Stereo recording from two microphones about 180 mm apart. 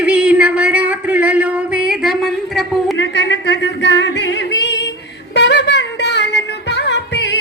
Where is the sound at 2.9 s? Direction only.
80° left.